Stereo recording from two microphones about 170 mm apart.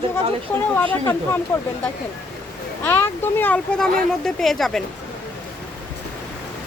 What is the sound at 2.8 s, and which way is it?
Speech, 10° left (ahead or behind).